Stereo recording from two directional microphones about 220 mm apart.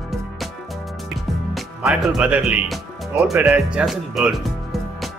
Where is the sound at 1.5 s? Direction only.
Centre (ahead or behind).